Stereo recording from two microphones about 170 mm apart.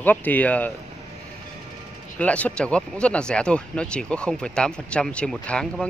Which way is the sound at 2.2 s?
10° left (ahead or behind).